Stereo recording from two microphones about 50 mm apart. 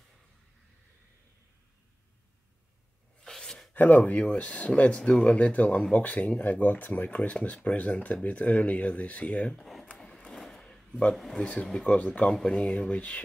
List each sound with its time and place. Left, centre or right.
3.3 s a sound: centre
3.7 s speech: left
9.6 s speech: centre
10.3 s a sound: centre
11.3 s speech: left
12.3 s speech: centre
12.5 s speech: left